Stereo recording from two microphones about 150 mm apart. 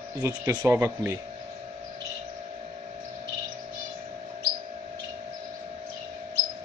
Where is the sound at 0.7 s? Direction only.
20° right (ahead or behind).